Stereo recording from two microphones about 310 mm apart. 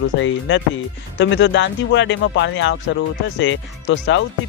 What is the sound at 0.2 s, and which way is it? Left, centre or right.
Speech, left.